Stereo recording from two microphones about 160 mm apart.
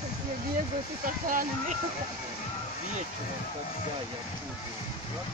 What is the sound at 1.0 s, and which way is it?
Speech, 55° right (ahead or behind).